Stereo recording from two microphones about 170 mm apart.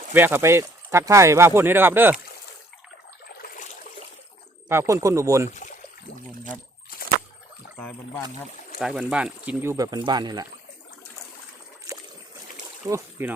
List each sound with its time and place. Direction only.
0.1 s speech: 10° right (ahead or behind)
3.4 s water: 55° left (ahead or behind)
4.7 s speech: 15° right (ahead or behind)
5.5 s speech: 45° left (ahead or behind)
7.8 s speech: 10° left (ahead or behind)
8.8 s speech: 5° right (ahead or behind); by 10.4 s 25° right (ahead or behind)
11.9 s boat: 20° right (ahead or behind)
12.9 s speech: 15° right (ahead or behind)